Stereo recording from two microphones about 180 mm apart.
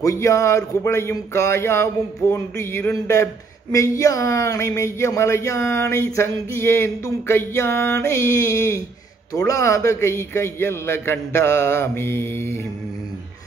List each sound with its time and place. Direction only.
0.0 s speech: 15° left (ahead or behind)